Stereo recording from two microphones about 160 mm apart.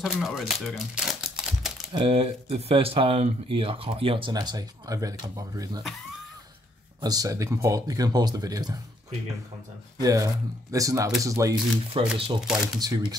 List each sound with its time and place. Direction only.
0.0 s speech: 5° right (ahead or behind)
2.0 s speech: 35° right (ahead or behind)
7.0 s speech: 25° right (ahead or behind)
10.0 s speech: 20° right (ahead or behind)
11.9 s speech: 30° right (ahead or behind)
12.4 s speech: 5° right (ahead or behind)